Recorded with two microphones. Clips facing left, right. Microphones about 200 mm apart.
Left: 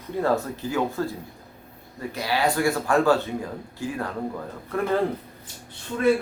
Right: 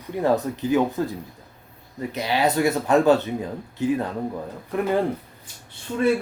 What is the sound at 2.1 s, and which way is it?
Speech, 20° right (ahead or behind).